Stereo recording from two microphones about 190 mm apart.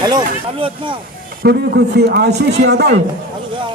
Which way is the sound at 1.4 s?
60° right (ahead or behind).